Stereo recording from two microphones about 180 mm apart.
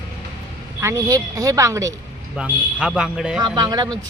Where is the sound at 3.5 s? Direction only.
20° right (ahead or behind).